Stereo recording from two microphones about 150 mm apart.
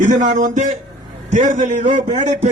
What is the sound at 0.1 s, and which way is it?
A man's voice, 55° right (ahead or behind).